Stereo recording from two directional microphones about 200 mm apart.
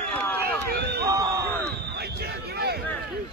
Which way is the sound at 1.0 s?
20° right (ahead or behind).